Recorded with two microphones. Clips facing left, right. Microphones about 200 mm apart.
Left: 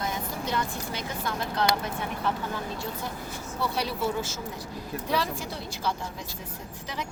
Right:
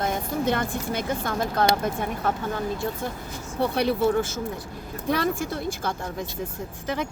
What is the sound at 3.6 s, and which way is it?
Speech, 55° right (ahead or behind).